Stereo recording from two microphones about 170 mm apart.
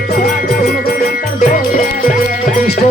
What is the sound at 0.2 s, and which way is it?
Music, 60° left (ahead or behind).